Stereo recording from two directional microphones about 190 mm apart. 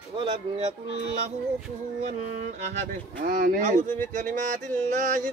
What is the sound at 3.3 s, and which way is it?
Male singing, 45° right (ahead or behind).